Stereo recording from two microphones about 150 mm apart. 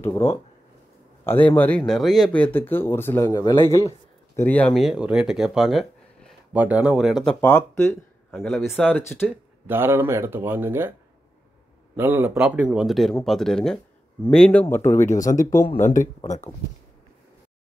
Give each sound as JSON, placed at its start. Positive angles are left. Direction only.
{"t": 1.2, "sound": "speech", "side_deg": 10}
{"t": 4.7, "sound": "speech", "side_deg": -5}
{"t": 7.3, "sound": "speech", "side_deg": 15}
{"t": 8.8, "sound": "speech", "side_deg": 10}
{"t": 9.7, "sound": "speech", "side_deg": -15}
{"t": 12.0, "sound": "speech", "side_deg": -15}
{"t": 15.0, "sound": "speech", "side_deg": 55}